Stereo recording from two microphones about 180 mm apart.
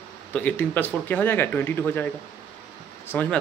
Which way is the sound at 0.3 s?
10° left (ahead or behind).